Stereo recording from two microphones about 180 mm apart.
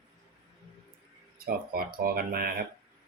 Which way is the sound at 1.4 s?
55° right (ahead or behind).